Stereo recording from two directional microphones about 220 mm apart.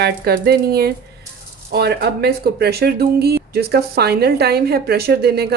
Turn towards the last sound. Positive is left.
turn(degrees=-45)  # may be behind; listen again after turning